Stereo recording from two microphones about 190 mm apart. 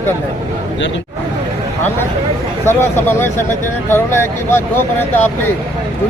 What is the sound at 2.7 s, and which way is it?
Speech, 10° left (ahead or behind).